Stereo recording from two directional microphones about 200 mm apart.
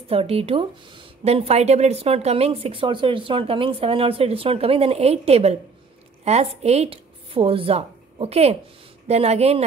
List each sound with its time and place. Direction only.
0.1 s a woman's voice: 30° right (ahead or behind)